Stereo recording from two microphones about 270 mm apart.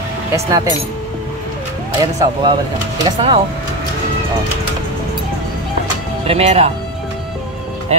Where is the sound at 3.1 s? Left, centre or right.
Centre.